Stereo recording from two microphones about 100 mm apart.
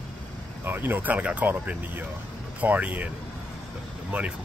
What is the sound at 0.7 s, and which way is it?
Speech, 20° right (ahead or behind).